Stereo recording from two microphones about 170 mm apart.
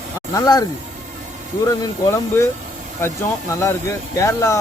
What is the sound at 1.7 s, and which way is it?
Speech, 20° left (ahead or behind).